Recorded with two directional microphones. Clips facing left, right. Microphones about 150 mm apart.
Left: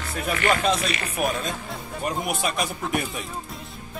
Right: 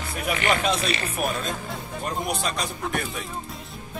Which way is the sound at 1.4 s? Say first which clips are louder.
Even; centre (ahead or behind).